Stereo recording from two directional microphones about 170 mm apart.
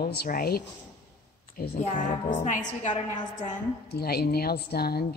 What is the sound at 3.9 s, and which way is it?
Speech, 70° left (ahead or behind).